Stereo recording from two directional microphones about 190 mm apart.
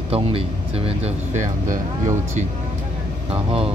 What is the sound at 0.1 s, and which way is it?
Speech, 30° right (ahead or behind).